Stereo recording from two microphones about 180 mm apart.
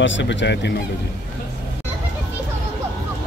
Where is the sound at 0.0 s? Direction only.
85° left; by 0.8 s 70° left (ahead or behind).